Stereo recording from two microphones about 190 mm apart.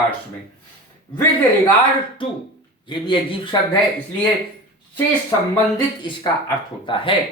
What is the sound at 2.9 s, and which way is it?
Speech, 25° left (ahead or behind).